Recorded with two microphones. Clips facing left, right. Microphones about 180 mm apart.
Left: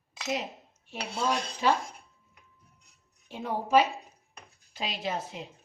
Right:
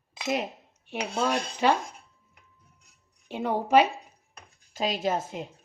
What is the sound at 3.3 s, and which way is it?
Speech, 70° right (ahead or behind).